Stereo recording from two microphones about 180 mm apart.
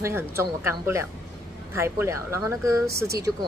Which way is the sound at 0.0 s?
15° right (ahead or behind).